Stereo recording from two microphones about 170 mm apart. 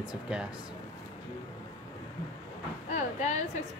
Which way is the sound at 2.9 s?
45° left (ahead or behind).